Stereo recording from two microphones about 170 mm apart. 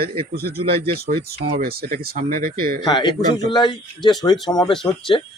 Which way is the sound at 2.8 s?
25° left (ahead or behind).